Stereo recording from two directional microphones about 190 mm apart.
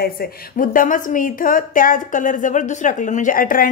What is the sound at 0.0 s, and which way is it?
A woman's voice, 50° left (ahead or behind).